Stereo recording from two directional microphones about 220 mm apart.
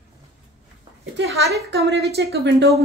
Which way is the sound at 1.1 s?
50° right (ahead or behind).